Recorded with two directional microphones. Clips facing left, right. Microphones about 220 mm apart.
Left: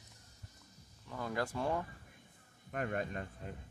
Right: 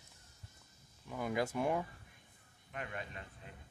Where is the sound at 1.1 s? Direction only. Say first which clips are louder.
Right 2 dB; 15° right (ahead or behind).